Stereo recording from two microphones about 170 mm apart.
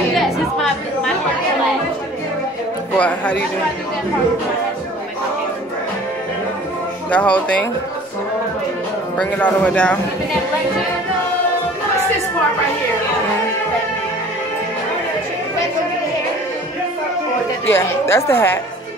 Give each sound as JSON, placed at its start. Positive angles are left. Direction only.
{"t": 0.2, "sound": "chatter", "side_deg": 0}
{"t": 3.0, "sound": "speech", "side_deg": 10}
{"t": 7.1, "sound": "speech", "side_deg": 10}
{"t": 9.1, "sound": "speech", "side_deg": 10}
{"t": 17.6, "sound": "speech", "side_deg": 15}